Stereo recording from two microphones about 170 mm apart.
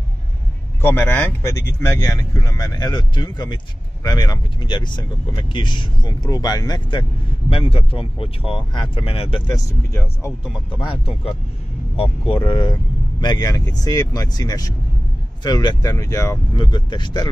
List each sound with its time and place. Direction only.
0.7 s speech: 15° left (ahead or behind); by 9.4 s 35° left (ahead or behind)
9.5 s speech: 15° left (ahead or behind)
10.7 s speech: 30° left (ahead or behind)